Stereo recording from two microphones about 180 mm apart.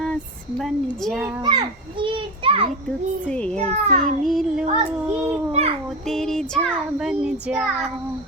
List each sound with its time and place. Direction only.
0.6 s child singing: centre (ahead or behind)
1.5 s children playing: 25° right (ahead or behind)
3.2 s a child's voice: 5° left (ahead or behind)
3.6 s a child's voice: 40° right (ahead or behind)
4.2 s child singing: centre (ahead or behind)
5.5 s a child's voice: 35° right (ahead or behind)
6.1 s child singing: centre (ahead or behind)